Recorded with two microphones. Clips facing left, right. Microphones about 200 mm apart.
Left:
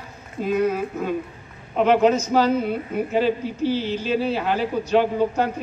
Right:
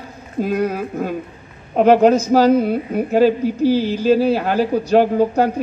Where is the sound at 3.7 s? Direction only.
10° right (ahead or behind).